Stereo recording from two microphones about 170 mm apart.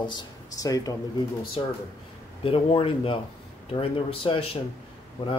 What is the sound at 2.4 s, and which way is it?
Speech, 35° left (ahead or behind).